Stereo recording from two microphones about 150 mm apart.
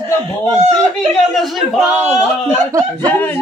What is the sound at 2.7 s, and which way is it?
Speech, 20° right (ahead or behind).